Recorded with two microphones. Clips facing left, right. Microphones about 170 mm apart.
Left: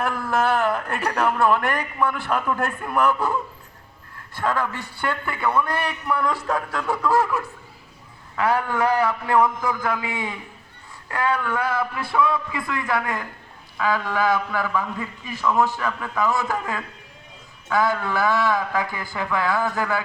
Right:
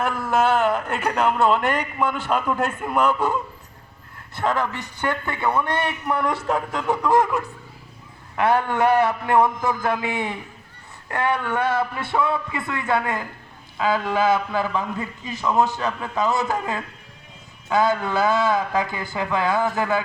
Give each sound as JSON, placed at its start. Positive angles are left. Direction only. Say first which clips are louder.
{"t": 0.0, "sound": "speech", "louder": "right 2 dB", "side_deg": -20}
{"t": 4.4, "sound": "speech", "louder": "right 1 dB", "side_deg": -20}